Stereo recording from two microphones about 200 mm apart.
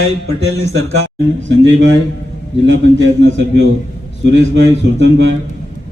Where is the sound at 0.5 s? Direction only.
55° left (ahead or behind).